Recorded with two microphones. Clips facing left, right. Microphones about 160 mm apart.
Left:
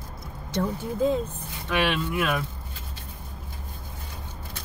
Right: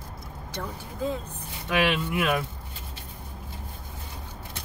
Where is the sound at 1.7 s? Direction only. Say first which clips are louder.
Even; 15° right (ahead or behind).